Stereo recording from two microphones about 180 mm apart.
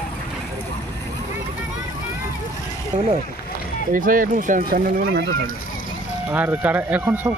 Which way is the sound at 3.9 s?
50° right (ahead or behind).